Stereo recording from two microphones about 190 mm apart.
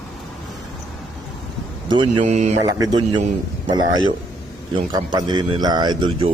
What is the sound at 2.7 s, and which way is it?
A man's voice, 20° right (ahead or behind).